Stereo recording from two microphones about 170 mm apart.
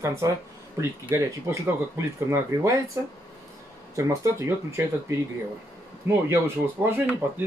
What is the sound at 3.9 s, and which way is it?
Speech, 15° right (ahead or behind).